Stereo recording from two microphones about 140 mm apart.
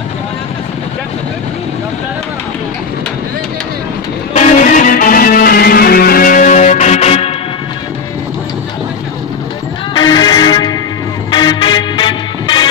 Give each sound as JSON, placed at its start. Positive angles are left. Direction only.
{"t": 4.3, "sound": "music", "side_deg": 60}
{"t": 9.9, "sound": "music", "side_deg": 30}